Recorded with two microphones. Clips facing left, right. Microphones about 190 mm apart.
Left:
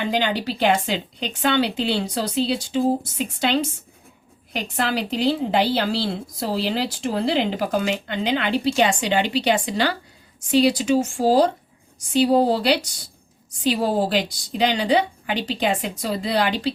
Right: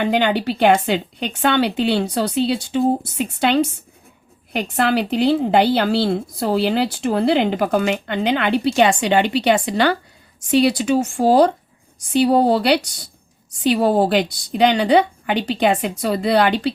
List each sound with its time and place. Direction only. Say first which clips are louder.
0.0 s a woman's voice: right 5 dB; 60° right (ahead or behind)